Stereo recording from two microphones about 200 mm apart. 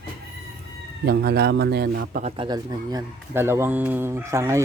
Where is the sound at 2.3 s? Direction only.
25° right (ahead or behind).